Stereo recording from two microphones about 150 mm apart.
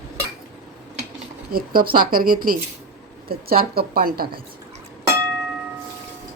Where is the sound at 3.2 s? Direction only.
90° right.